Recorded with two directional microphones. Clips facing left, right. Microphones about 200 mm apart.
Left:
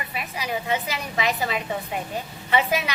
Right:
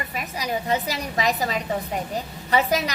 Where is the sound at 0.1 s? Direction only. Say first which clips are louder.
Right 1 dB; 40° right (ahead or behind).